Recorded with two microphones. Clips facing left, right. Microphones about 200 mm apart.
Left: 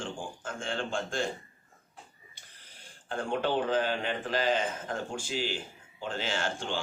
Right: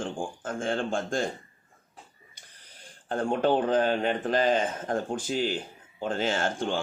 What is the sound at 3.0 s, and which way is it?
A man's voice, 45° right (ahead or behind).